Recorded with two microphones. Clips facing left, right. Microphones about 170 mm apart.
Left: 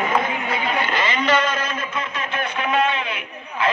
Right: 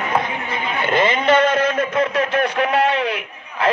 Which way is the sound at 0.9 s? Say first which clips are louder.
Right 7 dB; 55° right (ahead or behind).